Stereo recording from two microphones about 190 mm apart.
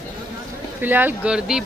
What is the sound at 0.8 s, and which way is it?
Speech, 10° right (ahead or behind).